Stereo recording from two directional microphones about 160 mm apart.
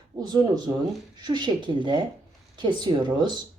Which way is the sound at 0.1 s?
20° right (ahead or behind).